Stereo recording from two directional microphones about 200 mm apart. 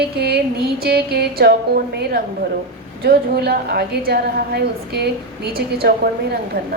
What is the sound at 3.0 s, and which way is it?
A woman's voice, 50° right (ahead or behind).